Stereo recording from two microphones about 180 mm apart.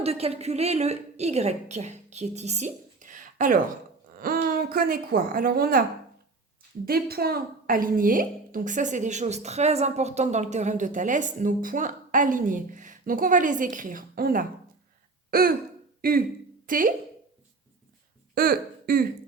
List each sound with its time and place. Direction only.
0.0 s a woman's voice: 35° right (ahead or behind); by 5.8 s 55° right (ahead or behind)
6.8 s a woman's voice: 55° right (ahead or behind)
15.3 s throat clearing: 55° right (ahead or behind)
16.0 s speech: 55° right (ahead or behind)
18.3 s speech: 55° right (ahead or behind)